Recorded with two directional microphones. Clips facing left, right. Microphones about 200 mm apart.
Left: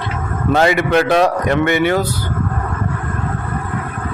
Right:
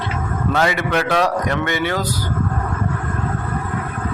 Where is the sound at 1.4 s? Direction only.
60° left (ahead or behind).